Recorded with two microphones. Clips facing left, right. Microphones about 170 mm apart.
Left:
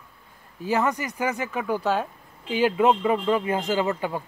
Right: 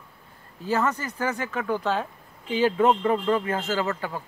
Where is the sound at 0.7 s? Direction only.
15° left (ahead or behind).